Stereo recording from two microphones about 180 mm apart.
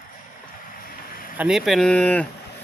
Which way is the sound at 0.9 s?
50° left (ahead or behind).